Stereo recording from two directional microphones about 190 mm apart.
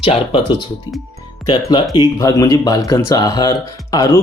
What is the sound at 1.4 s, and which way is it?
Speech, 25° left (ahead or behind).